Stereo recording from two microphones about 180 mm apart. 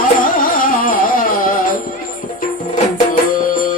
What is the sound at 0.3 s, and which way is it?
Carnatic music, 50° left (ahead or behind).